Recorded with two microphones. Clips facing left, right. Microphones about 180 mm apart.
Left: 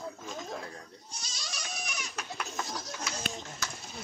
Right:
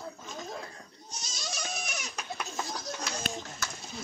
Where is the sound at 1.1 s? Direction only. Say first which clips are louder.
Right 7 dB; 45° right (ahead or behind).